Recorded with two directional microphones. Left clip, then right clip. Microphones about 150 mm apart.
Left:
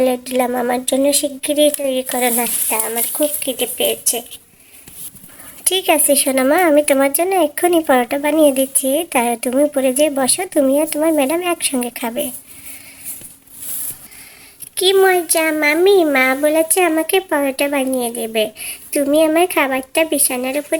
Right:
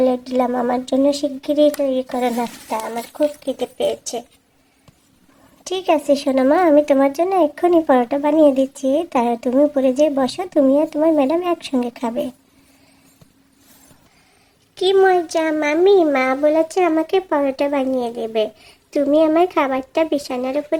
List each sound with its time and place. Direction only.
0.0 s speech: 5° left (ahead or behind)
5.6 s speech: centre (ahead or behind)
14.8 s speech: 5° left (ahead or behind)